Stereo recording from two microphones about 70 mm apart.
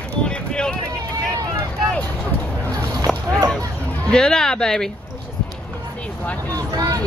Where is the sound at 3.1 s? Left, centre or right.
Centre.